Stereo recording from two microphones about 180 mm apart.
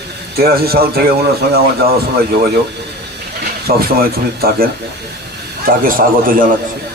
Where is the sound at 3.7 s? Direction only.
55° right (ahead or behind).